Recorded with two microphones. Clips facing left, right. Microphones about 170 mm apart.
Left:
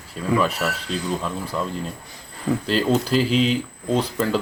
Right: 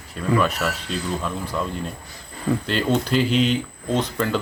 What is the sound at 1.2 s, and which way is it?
Speech, centre (ahead or behind).